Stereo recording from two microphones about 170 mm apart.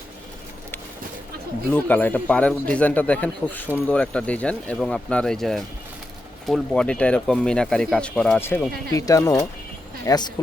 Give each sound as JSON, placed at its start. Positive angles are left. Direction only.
{"t": 1.7, "sound": "a man's voice", "side_deg": 10}
{"t": 8.9, "sound": "speech", "side_deg": 20}